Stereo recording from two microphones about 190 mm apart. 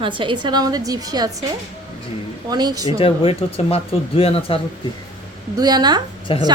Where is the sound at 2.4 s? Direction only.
20° right (ahead or behind).